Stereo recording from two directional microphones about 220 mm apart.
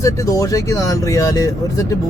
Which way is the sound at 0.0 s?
15° left (ahead or behind).